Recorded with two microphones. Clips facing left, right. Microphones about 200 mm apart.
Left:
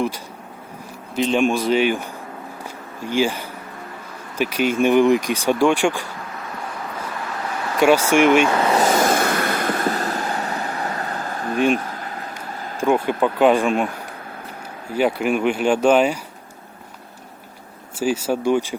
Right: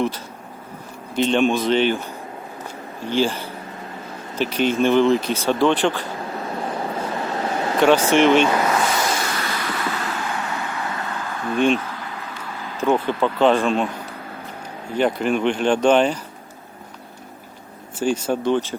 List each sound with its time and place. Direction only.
1.1 s speech: 5° left (ahead or behind)
3.1 s speech: 10° left (ahead or behind)
6.3 s vehicle: 30° right (ahead or behind)
7.8 s speech: 10° left (ahead or behind)
8.8 s vehicle: 45° left (ahead or behind)
12.8 s speech: 15° left (ahead or behind)
14.9 s speech: 10° left (ahead or behind)
17.9 s speech: 5° left (ahead or behind)